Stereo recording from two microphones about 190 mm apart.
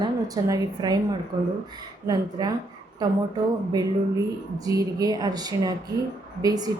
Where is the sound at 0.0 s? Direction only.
20° right (ahead or behind).